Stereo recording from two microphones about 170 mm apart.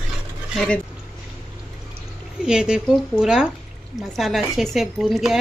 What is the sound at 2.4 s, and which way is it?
A woman's voice, 5° right (ahead or behind).